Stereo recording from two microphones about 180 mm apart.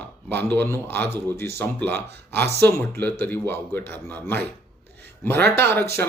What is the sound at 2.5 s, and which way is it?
A man's voice, 15° left (ahead or behind).